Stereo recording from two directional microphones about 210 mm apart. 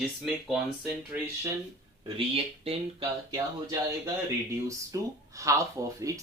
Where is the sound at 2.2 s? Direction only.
25° right (ahead or behind).